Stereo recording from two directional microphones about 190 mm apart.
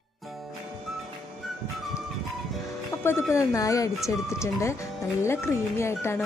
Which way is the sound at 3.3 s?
15° left (ahead or behind).